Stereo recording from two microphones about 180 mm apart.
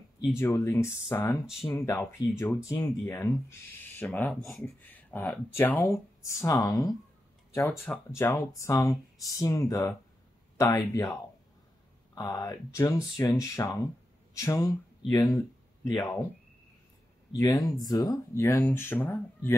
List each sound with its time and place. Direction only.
0.4 s speech: 15° left (ahead or behind)
1.5 s speech: centre (ahead or behind)
1.8 s speech: 15° left (ahead or behind)
12.2 s speech: 20° left (ahead or behind)
17.3 s speech: 20° left (ahead or behind)